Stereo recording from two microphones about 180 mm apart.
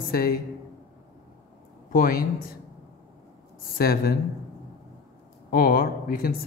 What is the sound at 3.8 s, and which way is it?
Speech, 55° left (ahead or behind).